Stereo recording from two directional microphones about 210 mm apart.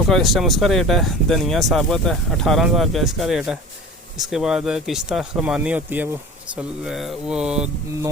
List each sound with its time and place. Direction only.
0.1 s speech: centre (ahead or behind)